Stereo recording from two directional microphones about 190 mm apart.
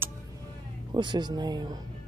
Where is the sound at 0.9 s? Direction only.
25° right (ahead or behind).